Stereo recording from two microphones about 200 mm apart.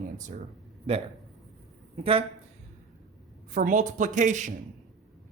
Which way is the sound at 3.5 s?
40° right (ahead or behind).